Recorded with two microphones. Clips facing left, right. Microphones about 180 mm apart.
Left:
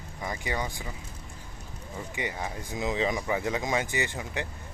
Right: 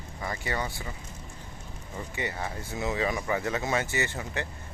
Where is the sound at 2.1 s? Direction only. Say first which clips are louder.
Even; 15° left (ahead or behind).